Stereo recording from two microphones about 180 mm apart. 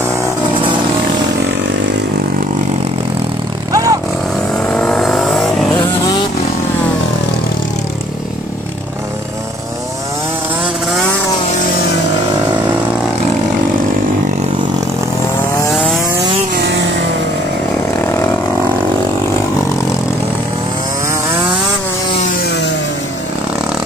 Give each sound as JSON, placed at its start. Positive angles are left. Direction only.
{"t": 3.7, "sound": "vehicle", "side_deg": -20}
{"t": 4.6, "sound": "vehicle", "side_deg": 5}
{"t": 22.4, "sound": "vehicle", "side_deg": 70}